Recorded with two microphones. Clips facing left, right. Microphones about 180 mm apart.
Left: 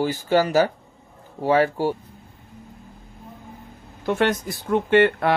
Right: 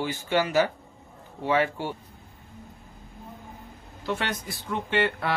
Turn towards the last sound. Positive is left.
turn(degrees=50)  # may be behind; listen again after turning